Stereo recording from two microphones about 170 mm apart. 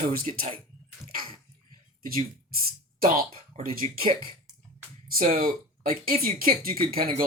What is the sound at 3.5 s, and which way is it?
Speech, 35° right (ahead or behind).